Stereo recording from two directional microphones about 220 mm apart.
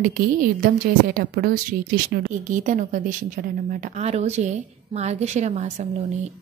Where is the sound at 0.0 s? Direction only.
40° right (ahead or behind).